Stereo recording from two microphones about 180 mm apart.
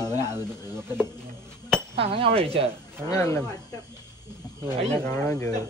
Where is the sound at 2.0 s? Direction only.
35° right (ahead or behind).